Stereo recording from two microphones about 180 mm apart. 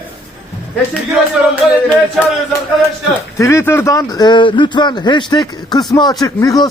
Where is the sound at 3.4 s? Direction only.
15° left (ahead or behind).